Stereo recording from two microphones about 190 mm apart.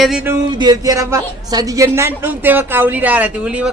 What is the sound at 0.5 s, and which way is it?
A woman's voice, 20° right (ahead or behind).